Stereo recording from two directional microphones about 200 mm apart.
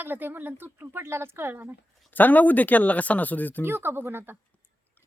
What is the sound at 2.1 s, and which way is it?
Speech, 10° left (ahead or behind).